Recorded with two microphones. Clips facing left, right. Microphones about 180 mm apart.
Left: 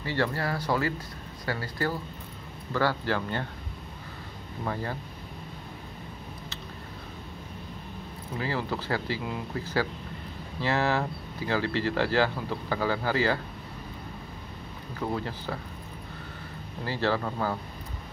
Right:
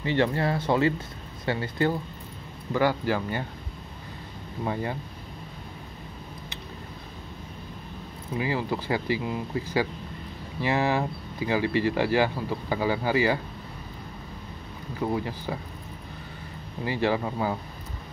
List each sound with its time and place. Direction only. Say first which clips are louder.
0.0 s speech: right 4 dB; 20° right (ahead or behind)
8.4 s speech: right 3 dB; 15° right (ahead or behind)
15.0 s speech: right 3 dB; 10° right (ahead or behind)
16.8 s speech: right 2 dB; 15° right (ahead or behind)